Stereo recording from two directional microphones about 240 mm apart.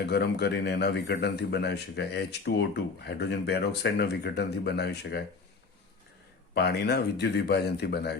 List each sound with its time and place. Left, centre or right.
0.0 s a man's voice: left
6.5 s a man's voice: left